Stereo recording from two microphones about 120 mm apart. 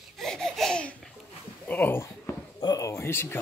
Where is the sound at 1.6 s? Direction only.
15° left (ahead or behind).